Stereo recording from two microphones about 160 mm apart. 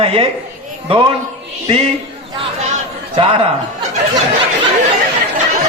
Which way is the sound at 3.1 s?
35° right (ahead or behind).